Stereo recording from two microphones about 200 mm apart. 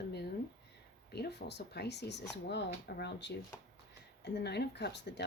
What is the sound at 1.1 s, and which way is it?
Speech, 55° left (ahead or behind).